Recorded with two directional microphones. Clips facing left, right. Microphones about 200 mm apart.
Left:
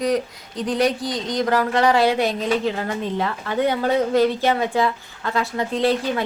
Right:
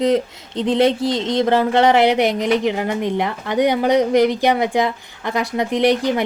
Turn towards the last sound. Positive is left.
turn(degrees=-15)  # may be behind; listen again after turning